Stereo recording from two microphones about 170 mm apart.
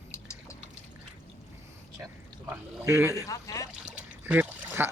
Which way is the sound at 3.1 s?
20° left (ahead or behind).